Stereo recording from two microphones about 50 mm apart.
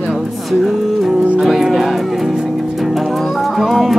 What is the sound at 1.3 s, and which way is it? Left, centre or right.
Music, centre.